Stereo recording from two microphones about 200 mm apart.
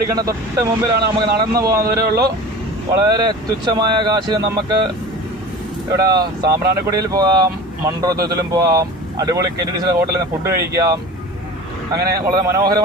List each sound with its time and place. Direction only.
0.1 s speech: 15° right (ahead or behind)
1.8 s speech: 50° right (ahead or behind)
3.0 s speech: 20° right (ahead or behind)
5.9 s speech: 20° right (ahead or behind)
11.9 s speech: 20° right (ahead or behind)